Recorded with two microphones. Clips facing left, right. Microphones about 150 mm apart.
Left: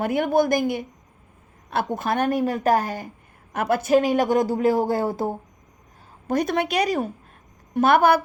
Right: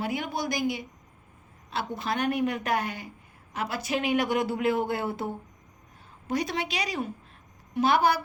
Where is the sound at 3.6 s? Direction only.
55° left (ahead or behind).